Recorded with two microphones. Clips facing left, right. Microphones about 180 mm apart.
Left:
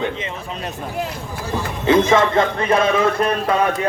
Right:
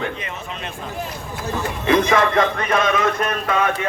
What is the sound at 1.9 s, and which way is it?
Speech, 25° left (ahead or behind).